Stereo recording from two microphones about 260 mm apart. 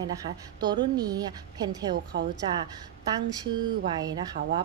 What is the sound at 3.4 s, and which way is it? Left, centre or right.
A woman's voice, centre.